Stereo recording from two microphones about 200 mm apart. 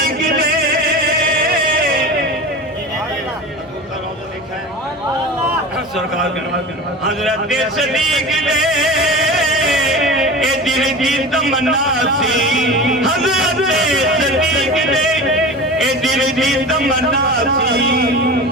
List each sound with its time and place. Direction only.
1.3 s music: 50° right (ahead or behind)
7.2 s speech: centre (ahead or behind)
17.4 s speech: 50° right (ahead or behind)